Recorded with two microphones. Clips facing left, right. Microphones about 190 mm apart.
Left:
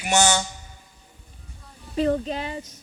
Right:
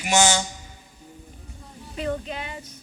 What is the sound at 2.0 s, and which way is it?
Speech, 35° left (ahead or behind).